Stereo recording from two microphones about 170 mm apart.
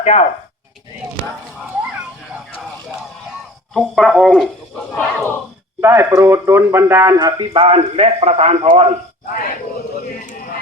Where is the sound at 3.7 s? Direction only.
Centre (ahead or behind).